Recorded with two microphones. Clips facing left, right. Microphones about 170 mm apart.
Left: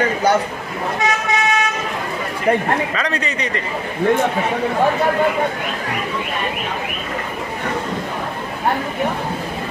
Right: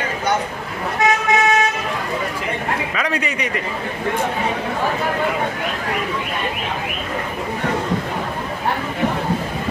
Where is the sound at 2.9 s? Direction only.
10° right (ahead or behind).